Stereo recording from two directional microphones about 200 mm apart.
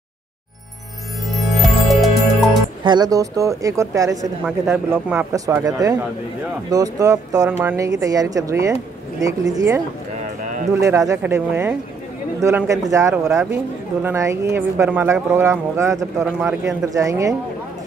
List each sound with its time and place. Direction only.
1.3 s music: centre (ahead or behind)
2.8 s speech: 20° right (ahead or behind)
10.8 s speech: 15° right (ahead or behind)